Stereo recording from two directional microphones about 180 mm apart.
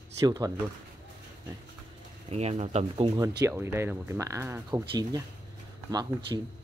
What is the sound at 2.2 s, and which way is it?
Speech, 35° right (ahead or behind).